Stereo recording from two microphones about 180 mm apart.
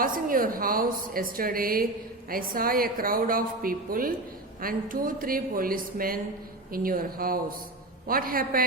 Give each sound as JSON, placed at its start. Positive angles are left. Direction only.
{"t": 0.0, "sound": "a woman's voice", "side_deg": -50}